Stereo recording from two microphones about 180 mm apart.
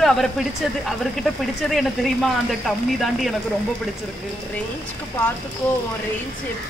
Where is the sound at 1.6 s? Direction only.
Centre (ahead or behind).